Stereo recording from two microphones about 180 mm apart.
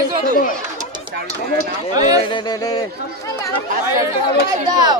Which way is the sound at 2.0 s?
20° right (ahead or behind).